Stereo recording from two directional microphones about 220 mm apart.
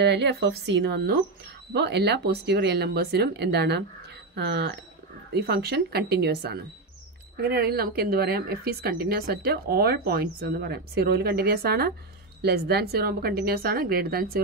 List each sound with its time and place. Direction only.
0.0 s a woman's voice: 50° right (ahead or behind)